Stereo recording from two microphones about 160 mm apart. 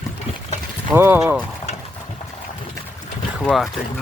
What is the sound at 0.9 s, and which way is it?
Speech, 15° right (ahead or behind).